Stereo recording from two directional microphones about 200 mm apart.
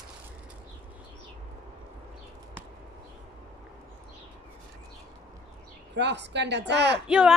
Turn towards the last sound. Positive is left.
turn(degrees=-5)  # may be behind; listen again after turning